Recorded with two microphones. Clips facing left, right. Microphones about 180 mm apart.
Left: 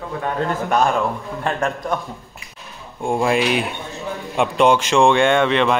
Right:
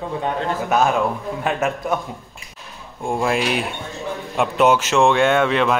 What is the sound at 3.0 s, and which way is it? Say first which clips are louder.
A man's voice: left 2 dB; centre (ahead or behind).